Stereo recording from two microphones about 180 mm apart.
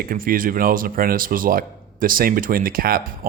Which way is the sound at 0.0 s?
50° right (ahead or behind).